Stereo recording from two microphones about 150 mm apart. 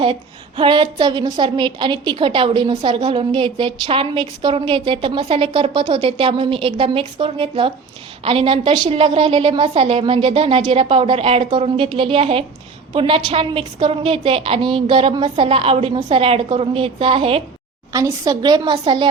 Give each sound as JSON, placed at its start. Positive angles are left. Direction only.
{"t": 0.0, "sound": "a woman's voice", "side_deg": -35}
{"t": 17.9, "sound": "a woman's voice", "side_deg": -25}